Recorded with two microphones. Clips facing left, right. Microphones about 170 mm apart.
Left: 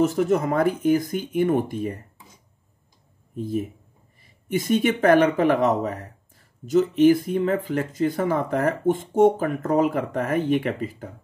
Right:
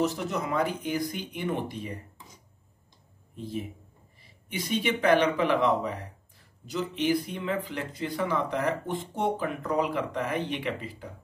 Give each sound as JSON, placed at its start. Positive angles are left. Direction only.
{"t": 0.0, "sound": "speech", "side_deg": 50}
{"t": 3.3, "sound": "speech", "side_deg": 45}